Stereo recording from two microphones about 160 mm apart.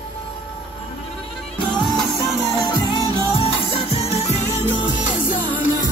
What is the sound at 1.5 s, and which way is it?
Music, 30° left (ahead or behind).